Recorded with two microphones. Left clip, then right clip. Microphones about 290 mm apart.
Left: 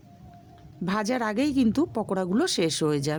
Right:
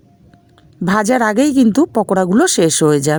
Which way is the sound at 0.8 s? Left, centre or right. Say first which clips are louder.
Right 13 dB; right.